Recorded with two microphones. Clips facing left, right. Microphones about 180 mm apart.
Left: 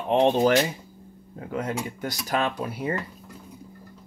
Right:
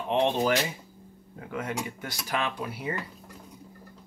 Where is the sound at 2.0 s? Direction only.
40° left (ahead or behind).